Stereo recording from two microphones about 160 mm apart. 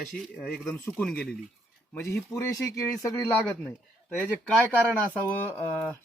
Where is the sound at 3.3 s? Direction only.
10° left (ahead or behind).